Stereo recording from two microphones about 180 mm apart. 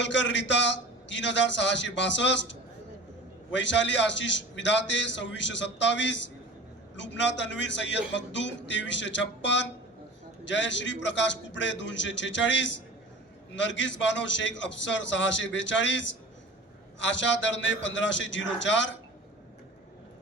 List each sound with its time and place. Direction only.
0.0 s a man's voice: 90° left